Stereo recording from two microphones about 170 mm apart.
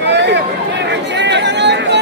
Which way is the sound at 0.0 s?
90° right.